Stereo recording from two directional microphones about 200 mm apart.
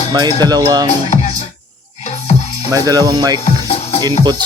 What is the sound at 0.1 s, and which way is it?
Speech, 20° right (ahead or behind).